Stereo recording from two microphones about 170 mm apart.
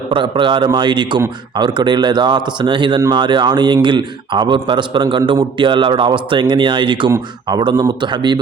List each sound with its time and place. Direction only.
0.1 s a man's voice: 30° right (ahead or behind)